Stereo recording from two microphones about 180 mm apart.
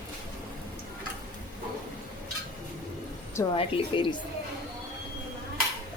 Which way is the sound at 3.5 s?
30° left (ahead or behind).